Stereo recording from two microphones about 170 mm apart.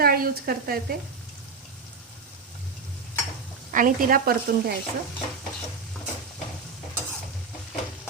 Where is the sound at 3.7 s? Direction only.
50° right (ahead or behind).